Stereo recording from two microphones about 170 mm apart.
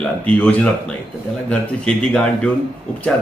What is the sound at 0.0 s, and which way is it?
A man's voice, 10° left (ahead or behind).